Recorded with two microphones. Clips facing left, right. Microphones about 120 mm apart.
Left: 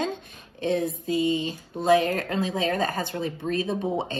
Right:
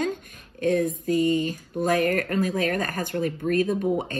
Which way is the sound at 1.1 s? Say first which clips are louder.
Right 2 dB; 50° right (ahead or behind).